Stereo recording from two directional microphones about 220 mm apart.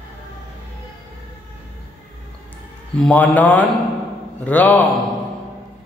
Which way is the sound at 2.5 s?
5° left (ahead or behind).